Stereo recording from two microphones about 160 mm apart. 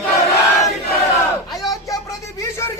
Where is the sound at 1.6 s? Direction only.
20° left (ahead or behind).